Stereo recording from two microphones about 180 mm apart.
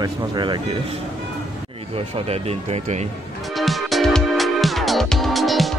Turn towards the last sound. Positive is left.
turn(degrees=0)  # may be behind; listen again after turning